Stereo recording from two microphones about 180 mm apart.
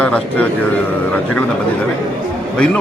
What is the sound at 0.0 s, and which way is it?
Speech, 5° left (ahead or behind).